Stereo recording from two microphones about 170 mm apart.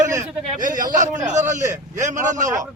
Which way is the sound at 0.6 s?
50° right (ahead or behind).